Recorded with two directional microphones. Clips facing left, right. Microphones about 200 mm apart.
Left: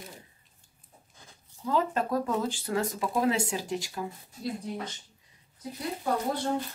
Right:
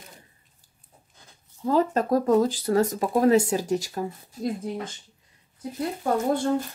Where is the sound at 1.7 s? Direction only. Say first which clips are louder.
Right 6 dB; 40° right (ahead or behind).